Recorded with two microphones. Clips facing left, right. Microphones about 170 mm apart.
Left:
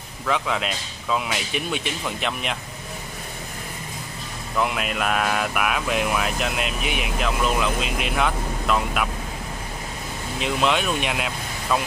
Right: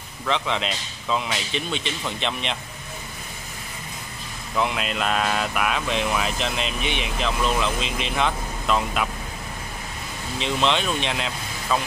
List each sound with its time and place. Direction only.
0.3 s speech: 5° left (ahead or behind)
4.6 s speech: 5° left (ahead or behind)
10.4 s speech: 5° left (ahead or behind)